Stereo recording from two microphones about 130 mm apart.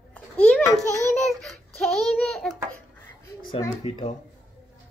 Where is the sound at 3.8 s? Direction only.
45° left (ahead or behind).